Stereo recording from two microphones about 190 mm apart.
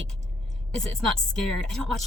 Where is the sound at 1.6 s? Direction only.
5° left (ahead or behind).